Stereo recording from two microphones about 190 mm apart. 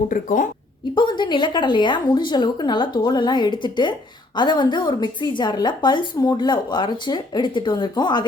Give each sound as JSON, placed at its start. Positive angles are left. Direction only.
{"t": 0.1, "sound": "speech", "side_deg": 45}
{"t": 0.9, "sound": "a woman's voice", "side_deg": 25}